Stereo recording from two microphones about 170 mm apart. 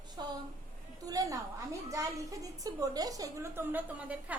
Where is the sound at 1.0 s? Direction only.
20° right (ahead or behind).